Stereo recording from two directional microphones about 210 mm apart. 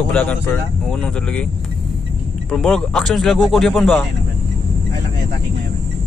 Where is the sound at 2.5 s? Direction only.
5° left (ahead or behind).